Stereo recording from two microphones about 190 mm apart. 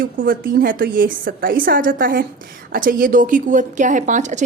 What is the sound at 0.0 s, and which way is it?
A woman's voice, 50° right (ahead or behind).